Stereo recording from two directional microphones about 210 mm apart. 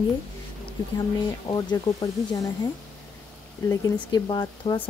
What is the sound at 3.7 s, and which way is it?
Speech, 20° left (ahead or behind).